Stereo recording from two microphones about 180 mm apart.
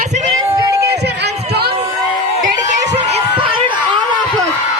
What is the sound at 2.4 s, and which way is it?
Crowd, 40° right (ahead or behind).